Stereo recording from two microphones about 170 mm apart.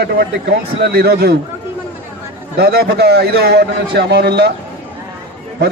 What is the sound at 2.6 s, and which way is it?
A man's voice, 65° right (ahead or behind).